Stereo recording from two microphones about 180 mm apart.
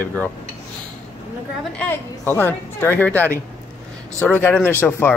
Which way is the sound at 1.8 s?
10° left (ahead or behind).